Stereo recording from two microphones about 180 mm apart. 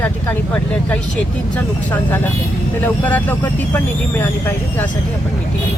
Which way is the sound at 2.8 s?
10° left (ahead or behind).